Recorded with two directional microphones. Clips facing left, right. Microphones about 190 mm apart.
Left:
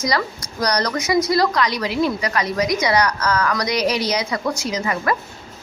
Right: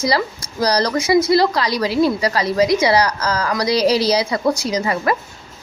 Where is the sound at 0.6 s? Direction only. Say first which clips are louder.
Right 4 dB; 30° right (ahead or behind).